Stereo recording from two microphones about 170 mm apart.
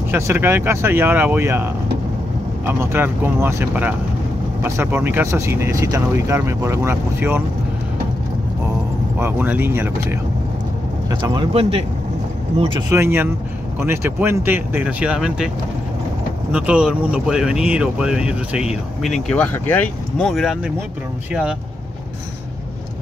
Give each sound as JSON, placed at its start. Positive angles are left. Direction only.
{"t": 0.1, "sound": "speech", "side_deg": -10}
{"t": 9.2, "sound": "speech", "side_deg": -10}
{"t": 11.1, "sound": "speech", "side_deg": -20}
{"t": 12.9, "sound": "speech", "side_deg": -15}
{"t": 16.5, "sound": "speech", "side_deg": -5}
{"t": 19.2, "sound": "speech", "side_deg": 10}